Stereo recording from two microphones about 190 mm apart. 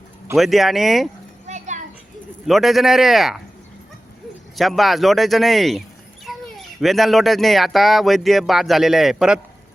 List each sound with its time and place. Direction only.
0.3 s speech: centre (ahead or behind)
1.5 s children playing: 40° right (ahead or behind)
2.5 s speech: centre (ahead or behind)
4.5 s speech: centre (ahead or behind)